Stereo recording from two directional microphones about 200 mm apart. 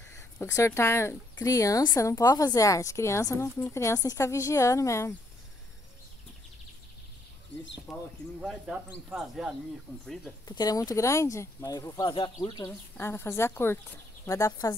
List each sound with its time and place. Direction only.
0.4 s a woman's voice: 15° left (ahead or behind)
7.9 s speech: centre (ahead or behind)
10.4 s a woman's voice: 20° left (ahead or behind)